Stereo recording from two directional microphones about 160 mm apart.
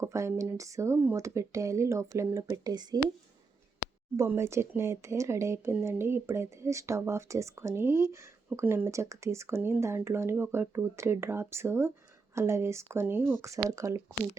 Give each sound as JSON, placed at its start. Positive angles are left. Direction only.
{"t": 0.0, "sound": "speech", "side_deg": -20}
{"t": 4.2, "sound": "speech", "side_deg": -15}